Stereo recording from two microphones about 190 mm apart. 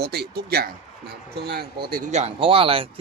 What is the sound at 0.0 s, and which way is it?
Speech, 55° right (ahead or behind).